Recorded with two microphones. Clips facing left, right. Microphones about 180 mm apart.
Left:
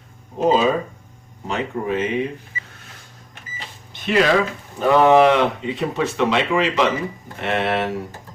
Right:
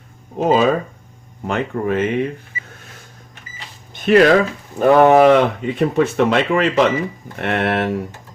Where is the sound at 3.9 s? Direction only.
50° right (ahead or behind).